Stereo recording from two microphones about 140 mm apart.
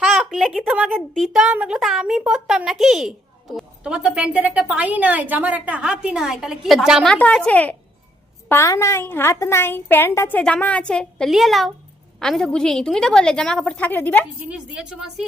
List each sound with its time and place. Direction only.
0.0 s a sound: centre (ahead or behind)
0.9 s a woman's voice: 5° left (ahead or behind)
7.1 s a woman's voice: 5° left (ahead or behind)
14.4 s a woman's voice: 5° right (ahead or behind)